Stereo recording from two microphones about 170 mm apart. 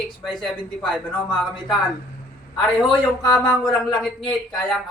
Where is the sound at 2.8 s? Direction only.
25° left (ahead or behind).